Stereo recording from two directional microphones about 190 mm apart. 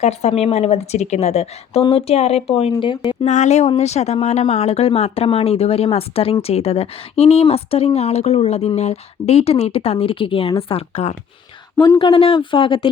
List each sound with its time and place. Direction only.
0.0 s speech: 35° left (ahead or behind)
3.2 s speech: 40° left (ahead or behind)